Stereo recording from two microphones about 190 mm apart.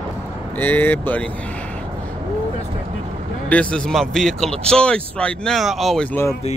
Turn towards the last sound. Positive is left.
turn(degrees=10)  # may be behind; listen again after turning